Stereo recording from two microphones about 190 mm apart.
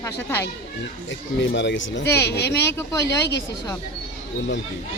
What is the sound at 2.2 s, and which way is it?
Speech, 60° left (ahead or behind).